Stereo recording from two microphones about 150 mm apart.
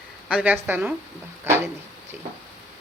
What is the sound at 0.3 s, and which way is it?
A woman's voice, 10° right (ahead or behind).